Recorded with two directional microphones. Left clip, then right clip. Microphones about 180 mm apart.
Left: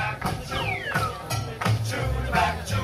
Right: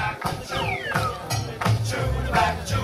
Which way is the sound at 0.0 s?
10° left (ahead or behind).